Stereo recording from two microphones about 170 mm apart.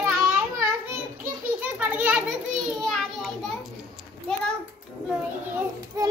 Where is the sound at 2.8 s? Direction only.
Centre (ahead or behind).